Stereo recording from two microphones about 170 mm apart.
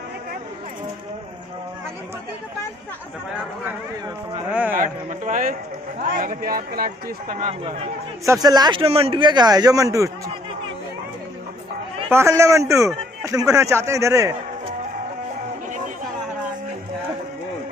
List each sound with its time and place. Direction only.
4.5 s a man's voice: 5° right (ahead or behind)
4.7 s a man's voice: 50° right (ahead or behind)
8.3 s a man's voice: 25° right (ahead or behind)
12.1 s a man's voice: 15° right (ahead or behind)